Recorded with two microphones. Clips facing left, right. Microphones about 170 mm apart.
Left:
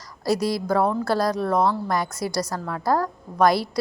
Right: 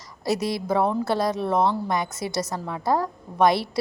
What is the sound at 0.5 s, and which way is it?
A woman's voice, centre (ahead or behind).